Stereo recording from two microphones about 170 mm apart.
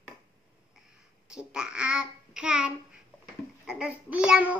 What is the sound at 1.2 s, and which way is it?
A child's voice, 5° right (ahead or behind).